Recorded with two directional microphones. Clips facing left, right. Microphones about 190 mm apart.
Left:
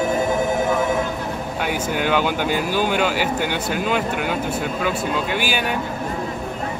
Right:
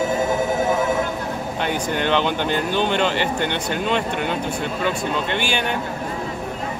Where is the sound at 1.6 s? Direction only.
10° left (ahead or behind).